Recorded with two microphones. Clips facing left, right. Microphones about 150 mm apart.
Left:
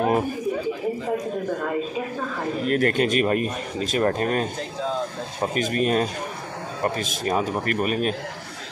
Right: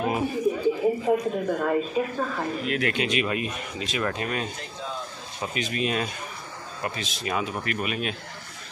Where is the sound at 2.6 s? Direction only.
45° left (ahead or behind).